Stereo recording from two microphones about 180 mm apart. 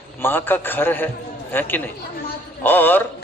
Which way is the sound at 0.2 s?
10° left (ahead or behind).